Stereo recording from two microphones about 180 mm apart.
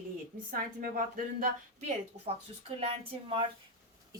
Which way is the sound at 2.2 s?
35° right (ahead or behind).